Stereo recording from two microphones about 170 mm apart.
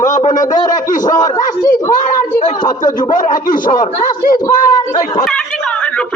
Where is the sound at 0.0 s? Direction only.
45° left (ahead or behind).